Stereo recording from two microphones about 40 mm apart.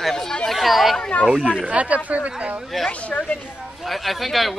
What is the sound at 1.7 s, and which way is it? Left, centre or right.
Speech, right.